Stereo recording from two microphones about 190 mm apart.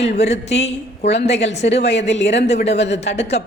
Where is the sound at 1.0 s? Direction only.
65° left (ahead or behind).